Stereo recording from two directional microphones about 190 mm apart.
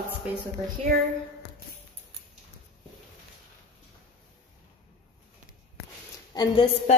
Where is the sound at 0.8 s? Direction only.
35° right (ahead or behind).